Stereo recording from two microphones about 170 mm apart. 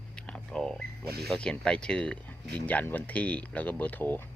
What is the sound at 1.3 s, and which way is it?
Speech, 5° left (ahead or behind).